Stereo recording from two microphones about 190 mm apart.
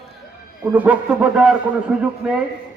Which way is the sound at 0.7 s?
5° right (ahead or behind).